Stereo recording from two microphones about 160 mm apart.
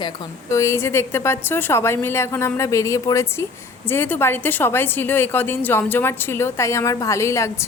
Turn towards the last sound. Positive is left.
turn(degrees=20)  # may be behind; listen again after turning